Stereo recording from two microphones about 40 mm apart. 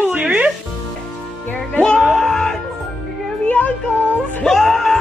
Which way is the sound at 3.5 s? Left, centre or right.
Left.